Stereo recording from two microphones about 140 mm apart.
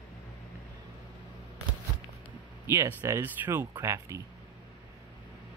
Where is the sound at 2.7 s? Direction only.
15° right (ahead or behind).